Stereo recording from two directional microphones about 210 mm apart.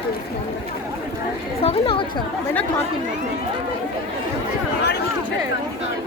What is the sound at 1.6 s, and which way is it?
Speech, 25° left (ahead or behind).